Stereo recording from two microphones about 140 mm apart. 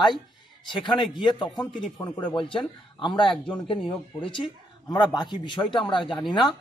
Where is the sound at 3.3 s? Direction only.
10° left (ahead or behind).